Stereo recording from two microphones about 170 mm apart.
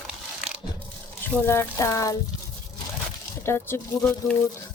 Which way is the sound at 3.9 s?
Centre (ahead or behind).